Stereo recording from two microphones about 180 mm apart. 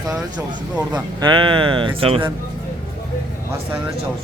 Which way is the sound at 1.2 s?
25° right (ahead or behind).